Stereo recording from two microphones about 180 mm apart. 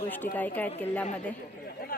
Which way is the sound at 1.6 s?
55° left (ahead or behind).